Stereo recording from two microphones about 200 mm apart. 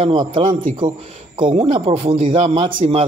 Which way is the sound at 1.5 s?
30° right (ahead or behind).